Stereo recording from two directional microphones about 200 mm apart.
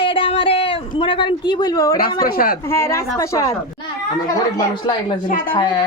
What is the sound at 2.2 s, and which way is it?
Speech, 45° left (ahead or behind).